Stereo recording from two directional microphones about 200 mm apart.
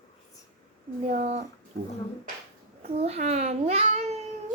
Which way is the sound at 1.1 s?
35° right (ahead or behind).